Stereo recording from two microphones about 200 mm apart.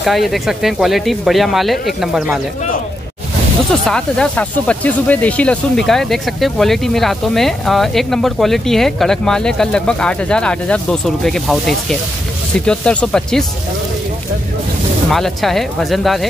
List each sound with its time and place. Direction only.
0.0 s speech: centre (ahead or behind)
3.8 s speech: 5° left (ahead or behind)
15.0 s speech: centre (ahead or behind)